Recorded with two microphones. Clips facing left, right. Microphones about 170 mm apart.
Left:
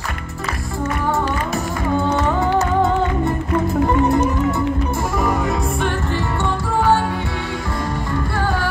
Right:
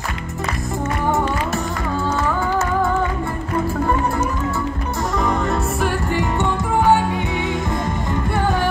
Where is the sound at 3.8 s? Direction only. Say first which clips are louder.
Left 4 dB; 20° left (ahead or behind).